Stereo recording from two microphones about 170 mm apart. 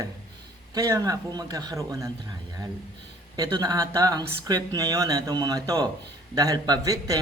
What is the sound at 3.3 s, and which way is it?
A man's voice, 25° right (ahead or behind).